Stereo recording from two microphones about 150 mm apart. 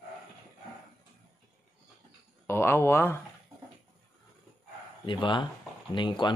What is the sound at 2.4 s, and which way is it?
Speech, 15° left (ahead or behind).